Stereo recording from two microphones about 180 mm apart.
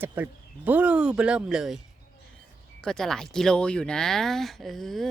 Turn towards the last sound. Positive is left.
turn(degrees=0)  # may be behind; listen again after turning